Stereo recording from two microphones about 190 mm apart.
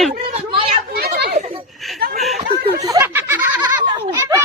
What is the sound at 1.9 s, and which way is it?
Chuckle, 50° right (ahead or behind).